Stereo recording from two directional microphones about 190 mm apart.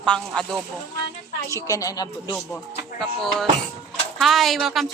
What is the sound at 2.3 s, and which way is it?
Speech, centre (ahead or behind).